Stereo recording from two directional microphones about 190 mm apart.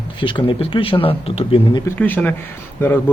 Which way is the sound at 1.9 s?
10° left (ahead or behind).